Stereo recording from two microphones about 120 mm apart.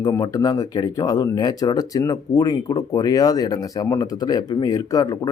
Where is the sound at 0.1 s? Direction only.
30° left (ahead or behind).